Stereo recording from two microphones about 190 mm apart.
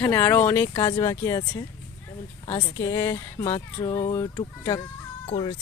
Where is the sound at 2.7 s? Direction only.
15° left (ahead or behind).